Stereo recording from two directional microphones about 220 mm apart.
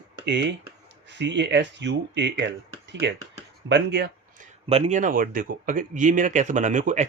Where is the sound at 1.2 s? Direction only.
55° right (ahead or behind).